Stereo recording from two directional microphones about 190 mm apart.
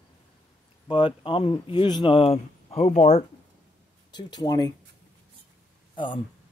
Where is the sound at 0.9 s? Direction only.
25° left (ahead or behind).